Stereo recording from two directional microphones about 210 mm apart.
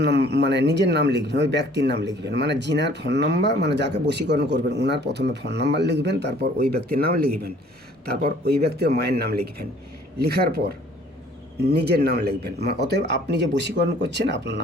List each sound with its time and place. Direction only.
0.0 s speech: 50° right (ahead or behind)
11.6 s speech: 50° right (ahead or behind)